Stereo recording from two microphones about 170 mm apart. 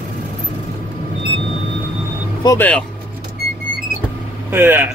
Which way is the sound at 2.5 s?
10° left (ahead or behind).